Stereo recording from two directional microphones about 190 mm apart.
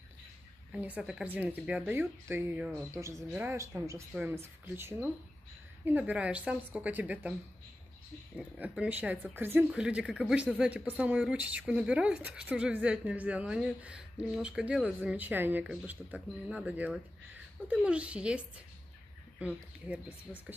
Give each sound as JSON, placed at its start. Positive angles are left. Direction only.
{"t": 0.7, "sound": "speech", "side_deg": -5}
{"t": 8.4, "sound": "speech", "side_deg": -5}